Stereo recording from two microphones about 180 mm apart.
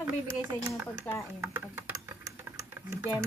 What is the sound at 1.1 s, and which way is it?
Speech, 10° left (ahead or behind).